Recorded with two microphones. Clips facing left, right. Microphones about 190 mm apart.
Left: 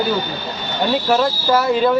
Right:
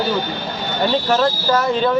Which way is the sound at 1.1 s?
5° left (ahead or behind).